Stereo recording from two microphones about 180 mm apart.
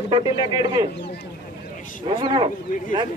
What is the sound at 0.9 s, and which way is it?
Speech, 70° left (ahead or behind).